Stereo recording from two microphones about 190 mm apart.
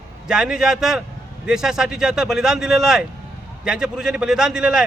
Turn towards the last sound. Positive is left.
turn(degrees=-5)  # may be behind; listen again after turning